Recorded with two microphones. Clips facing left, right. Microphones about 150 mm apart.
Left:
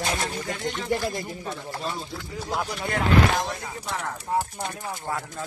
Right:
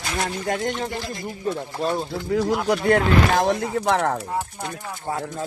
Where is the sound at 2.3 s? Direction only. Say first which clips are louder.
Right 10 dB; 70° right (ahead or behind).